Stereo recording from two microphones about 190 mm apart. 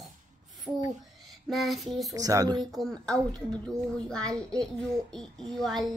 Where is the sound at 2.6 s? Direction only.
Centre (ahead or behind).